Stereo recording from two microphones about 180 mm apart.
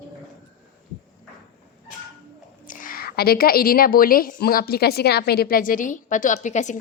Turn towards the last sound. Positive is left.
turn(degrees=40)  # may be behind; listen again after turning